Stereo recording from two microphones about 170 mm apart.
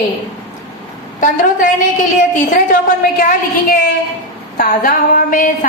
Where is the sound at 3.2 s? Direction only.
55° left (ahead or behind).